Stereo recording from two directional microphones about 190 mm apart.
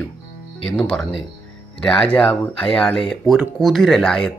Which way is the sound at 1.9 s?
5° left (ahead or behind).